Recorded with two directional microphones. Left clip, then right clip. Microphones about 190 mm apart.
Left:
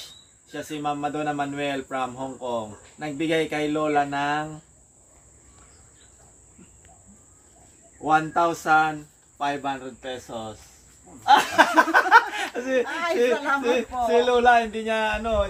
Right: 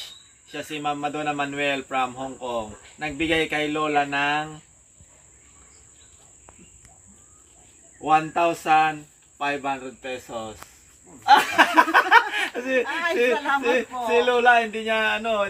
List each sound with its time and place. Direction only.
0.5 s speech: centre (ahead or behind)
8.0 s speech: centre (ahead or behind)
11.3 s a sound: 5° right (ahead or behind)
12.5 s speech: centre (ahead or behind)
12.8 s speech: 15° left (ahead or behind)
13.6 s speech: centre (ahead or behind)